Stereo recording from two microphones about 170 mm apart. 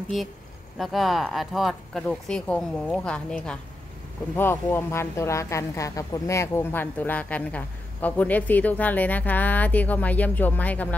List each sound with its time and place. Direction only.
0.7 s speech: centre (ahead or behind)